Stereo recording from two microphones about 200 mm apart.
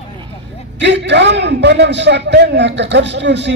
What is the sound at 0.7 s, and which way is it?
Speech, 60° right (ahead or behind).